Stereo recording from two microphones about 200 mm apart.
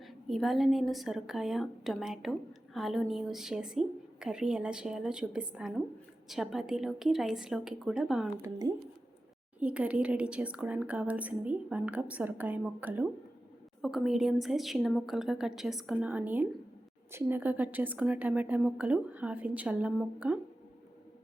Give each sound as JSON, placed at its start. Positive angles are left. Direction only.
{"t": 0.0, "sound": "a woman's voice", "side_deg": 0}
{"t": 8.4, "sound": "speech", "side_deg": -20}
{"t": 9.6, "sound": "a woman's voice", "side_deg": -5}